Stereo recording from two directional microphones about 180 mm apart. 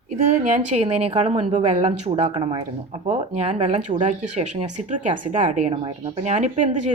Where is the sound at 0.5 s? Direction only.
40° right (ahead or behind).